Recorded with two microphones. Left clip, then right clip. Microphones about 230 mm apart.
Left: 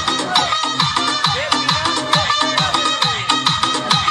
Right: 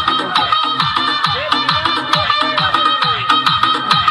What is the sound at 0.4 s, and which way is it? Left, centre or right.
Music, left.